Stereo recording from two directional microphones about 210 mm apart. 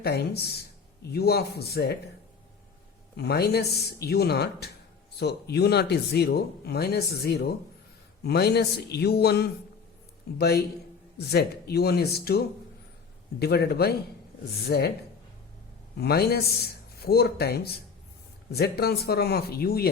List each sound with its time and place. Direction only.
0.0 s speech: 50° left (ahead or behind)
3.2 s speech: 50° left (ahead or behind)
16.0 s speech: 50° left (ahead or behind)